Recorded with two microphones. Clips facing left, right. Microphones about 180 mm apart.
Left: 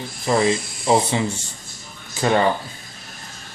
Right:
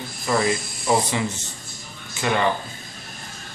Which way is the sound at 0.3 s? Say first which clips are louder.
Left 3 dB; 25° left (ahead or behind).